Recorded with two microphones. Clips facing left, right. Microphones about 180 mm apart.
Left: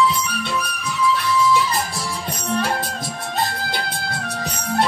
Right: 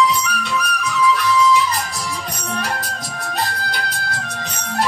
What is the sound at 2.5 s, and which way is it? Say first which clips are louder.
Music: left 4 dB; 25° left (ahead or behind).